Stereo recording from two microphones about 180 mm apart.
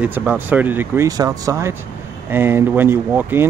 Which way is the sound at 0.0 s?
10° right (ahead or behind).